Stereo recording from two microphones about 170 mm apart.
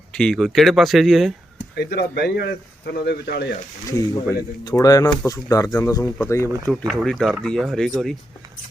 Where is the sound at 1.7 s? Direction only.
75° left (ahead or behind).